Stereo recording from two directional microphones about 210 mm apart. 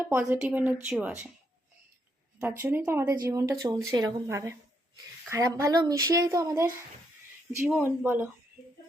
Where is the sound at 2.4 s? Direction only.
10° right (ahead or behind).